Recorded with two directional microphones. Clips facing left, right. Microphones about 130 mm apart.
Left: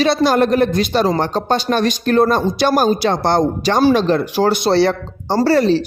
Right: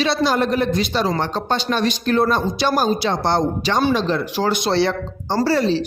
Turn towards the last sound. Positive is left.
turn(degrees=55)  # may be behind; listen again after turning